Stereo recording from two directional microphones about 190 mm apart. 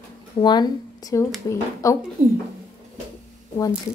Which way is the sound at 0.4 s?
20° left (ahead or behind).